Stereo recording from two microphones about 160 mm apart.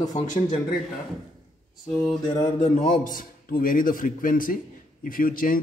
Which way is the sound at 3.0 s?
60° left (ahead or behind).